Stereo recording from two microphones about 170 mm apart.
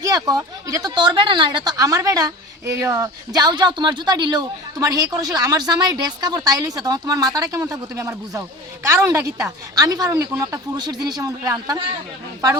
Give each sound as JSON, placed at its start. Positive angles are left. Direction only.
{"t": 0.0, "sound": "speech", "side_deg": -20}